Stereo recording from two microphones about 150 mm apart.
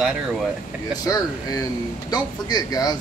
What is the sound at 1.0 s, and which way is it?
Speech, 25° left (ahead or behind).